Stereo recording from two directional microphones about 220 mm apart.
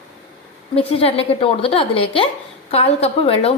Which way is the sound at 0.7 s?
25° left (ahead or behind).